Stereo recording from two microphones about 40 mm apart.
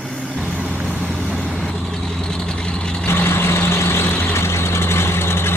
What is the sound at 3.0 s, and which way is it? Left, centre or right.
Vehicle, left.